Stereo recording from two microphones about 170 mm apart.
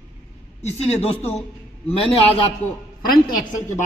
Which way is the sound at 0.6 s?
40° left (ahead or behind).